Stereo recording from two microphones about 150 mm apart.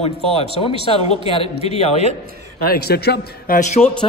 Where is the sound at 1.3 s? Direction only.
45° left (ahead or behind).